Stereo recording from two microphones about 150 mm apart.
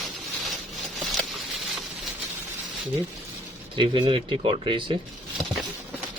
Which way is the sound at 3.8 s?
35° right (ahead or behind).